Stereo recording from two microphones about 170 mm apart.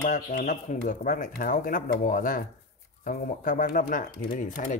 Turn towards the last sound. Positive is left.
turn(degrees=50)  # may be behind; listen again after turning